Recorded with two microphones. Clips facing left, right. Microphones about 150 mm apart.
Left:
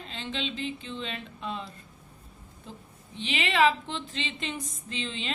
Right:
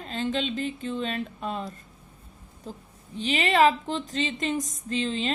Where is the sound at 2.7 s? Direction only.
40° right (ahead or behind).